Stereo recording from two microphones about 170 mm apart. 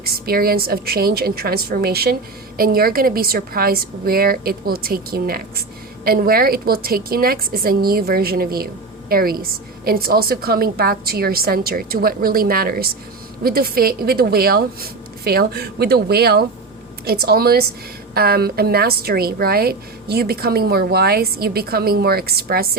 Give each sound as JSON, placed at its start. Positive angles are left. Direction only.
{"t": 0.0, "sound": "a woman's voice", "side_deg": -65}